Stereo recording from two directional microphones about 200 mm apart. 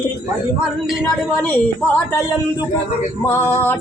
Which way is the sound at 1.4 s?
10° left (ahead or behind).